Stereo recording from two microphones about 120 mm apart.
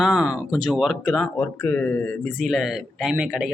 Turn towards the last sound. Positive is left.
turn(degrees=-10)  # may be behind; listen again after turning